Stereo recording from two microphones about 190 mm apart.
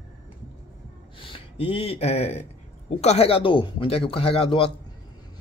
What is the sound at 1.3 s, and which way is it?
Speech, 30° left (ahead or behind).